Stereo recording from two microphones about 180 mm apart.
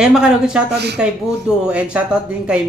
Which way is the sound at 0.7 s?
65° right (ahead or behind).